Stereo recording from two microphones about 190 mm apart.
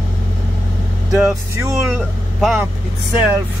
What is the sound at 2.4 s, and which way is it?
Speech, centre (ahead or behind).